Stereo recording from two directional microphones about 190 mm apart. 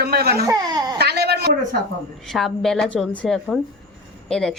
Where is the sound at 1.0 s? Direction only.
60° right (ahead or behind).